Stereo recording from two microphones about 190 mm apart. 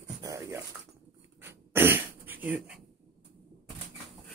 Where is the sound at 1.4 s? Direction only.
10° right (ahead or behind).